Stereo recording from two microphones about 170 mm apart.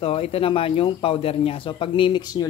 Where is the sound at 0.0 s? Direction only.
35° left (ahead or behind).